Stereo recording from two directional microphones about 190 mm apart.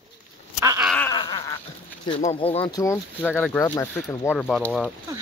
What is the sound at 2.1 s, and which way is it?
Speech, 30° left (ahead or behind).